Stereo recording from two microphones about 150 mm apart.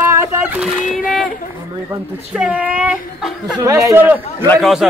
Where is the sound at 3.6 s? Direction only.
20° right (ahead or behind).